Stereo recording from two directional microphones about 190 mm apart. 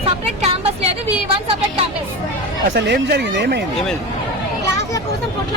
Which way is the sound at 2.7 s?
60° right (ahead or behind).